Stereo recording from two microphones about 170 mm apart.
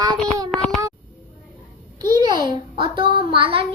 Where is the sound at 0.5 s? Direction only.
Centre (ahead or behind).